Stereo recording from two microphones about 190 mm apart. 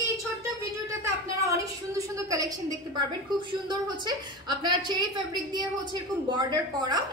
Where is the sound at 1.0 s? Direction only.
15° right (ahead or behind).